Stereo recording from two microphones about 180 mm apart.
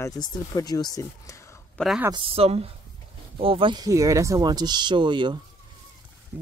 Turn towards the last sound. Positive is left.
turn(degrees=-25)  # may be behind; listen again after turning